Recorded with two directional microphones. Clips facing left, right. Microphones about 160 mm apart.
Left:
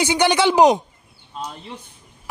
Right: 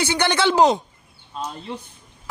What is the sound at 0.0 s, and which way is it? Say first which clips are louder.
Speech: left 3 dB; 15° left (ahead or behind).